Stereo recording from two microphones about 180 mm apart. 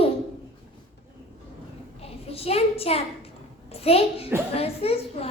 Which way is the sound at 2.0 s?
35° left (ahead or behind).